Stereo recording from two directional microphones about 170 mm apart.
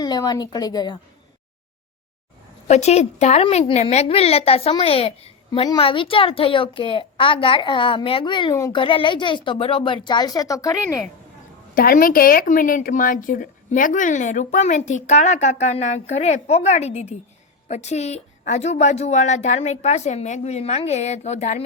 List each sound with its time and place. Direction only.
0.0 s a woman's voice: 25° left (ahead or behind)
2.6 s a woman's voice: 40° left (ahead or behind); by 10.8 s 20° left (ahead or behind)
11.7 s a woman's voice: 60° left (ahead or behind); by 21.6 s 40° left (ahead or behind)